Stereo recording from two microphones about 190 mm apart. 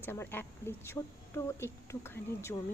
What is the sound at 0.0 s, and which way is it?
A woman's voice, 10° left (ahead or behind).